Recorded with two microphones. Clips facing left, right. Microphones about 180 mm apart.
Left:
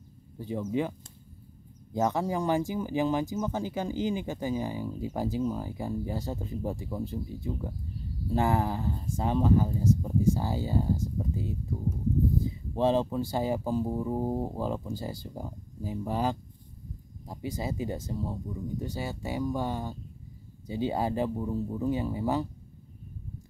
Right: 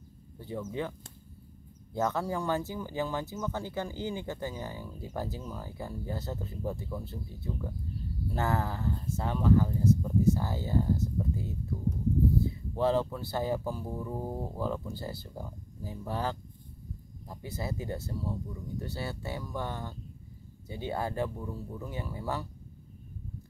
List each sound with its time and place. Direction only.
0.4 s speech: 15° left (ahead or behind)
2.0 s speech: 15° left (ahead or behind)